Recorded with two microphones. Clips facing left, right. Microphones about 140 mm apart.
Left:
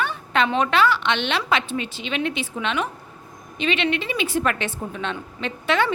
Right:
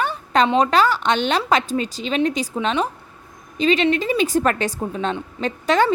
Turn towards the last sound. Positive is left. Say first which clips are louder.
# right 4 dB
turn(degrees=-40)  # may be behind; listen again after turning